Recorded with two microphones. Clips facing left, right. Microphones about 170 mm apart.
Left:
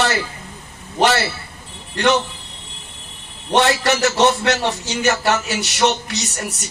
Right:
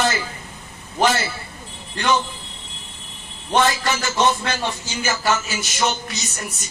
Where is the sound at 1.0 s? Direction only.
75° left (ahead or behind).